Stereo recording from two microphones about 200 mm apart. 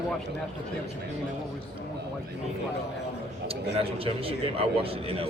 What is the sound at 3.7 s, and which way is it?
A man's voice, 30° right (ahead or behind).